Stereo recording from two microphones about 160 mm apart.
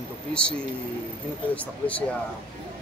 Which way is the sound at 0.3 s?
5° left (ahead or behind).